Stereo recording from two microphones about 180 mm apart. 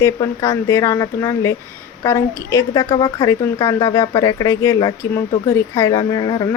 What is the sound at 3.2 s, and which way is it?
Speech, 15° left (ahead or behind).